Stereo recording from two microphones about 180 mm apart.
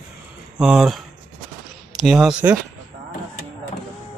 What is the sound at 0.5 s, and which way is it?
Speech, 5° right (ahead or behind).